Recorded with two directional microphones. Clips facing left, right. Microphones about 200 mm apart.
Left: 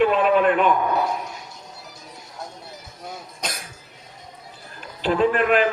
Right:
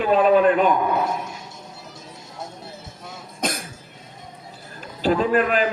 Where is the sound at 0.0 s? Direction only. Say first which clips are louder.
Right 2 dB; 40° right (ahead or behind).